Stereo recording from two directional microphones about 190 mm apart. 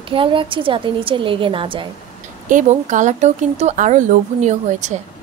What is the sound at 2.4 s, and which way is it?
Speech, 40° right (ahead or behind).